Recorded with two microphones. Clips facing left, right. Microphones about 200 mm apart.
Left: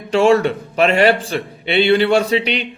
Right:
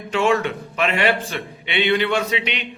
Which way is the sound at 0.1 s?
35° left (ahead or behind).